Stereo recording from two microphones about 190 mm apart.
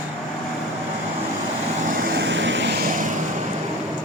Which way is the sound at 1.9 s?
55° right (ahead or behind).